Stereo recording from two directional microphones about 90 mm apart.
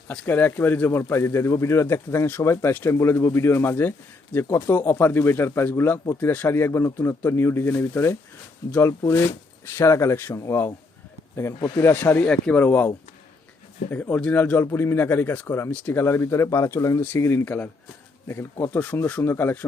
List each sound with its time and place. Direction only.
0.1 s speech: 20° left (ahead or behind)
11.8 s speech: 25° left (ahead or behind)
12.2 s speech: 15° left (ahead or behind)
13.9 s speech: 20° left (ahead or behind)